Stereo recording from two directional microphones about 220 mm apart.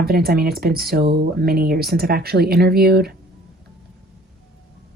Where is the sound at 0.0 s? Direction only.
45° right (ahead or behind).